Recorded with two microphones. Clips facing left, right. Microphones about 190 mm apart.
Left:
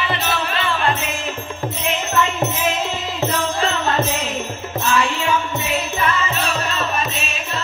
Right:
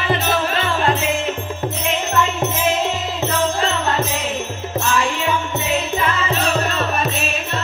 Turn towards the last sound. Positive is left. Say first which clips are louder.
# right 2 dB
turn(degrees=-60)  # may be behind; listen again after turning